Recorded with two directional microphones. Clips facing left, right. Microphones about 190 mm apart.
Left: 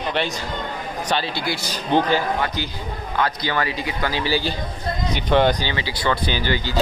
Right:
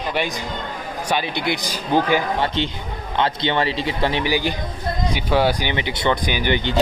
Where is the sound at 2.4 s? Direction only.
25° right (ahead or behind).